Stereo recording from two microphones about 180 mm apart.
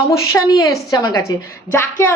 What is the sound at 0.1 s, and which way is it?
A woman's voice, 15° left (ahead or behind).